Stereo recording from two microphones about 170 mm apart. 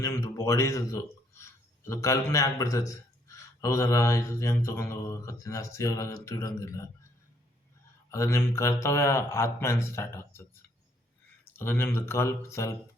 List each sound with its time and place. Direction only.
0.0 s speech: 15° left (ahead or behind)
8.1 s speech: 15° left (ahead or behind)
11.5 s speech: 15° left (ahead or behind)